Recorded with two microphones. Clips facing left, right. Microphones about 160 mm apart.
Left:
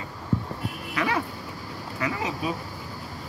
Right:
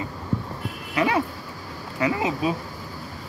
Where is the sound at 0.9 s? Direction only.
20° right (ahead or behind).